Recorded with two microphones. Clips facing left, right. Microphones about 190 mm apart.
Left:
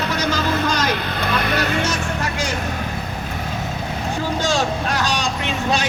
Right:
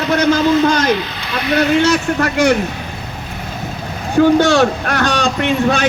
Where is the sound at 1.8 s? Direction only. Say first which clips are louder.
Right 8 dB; 70° right (ahead or behind).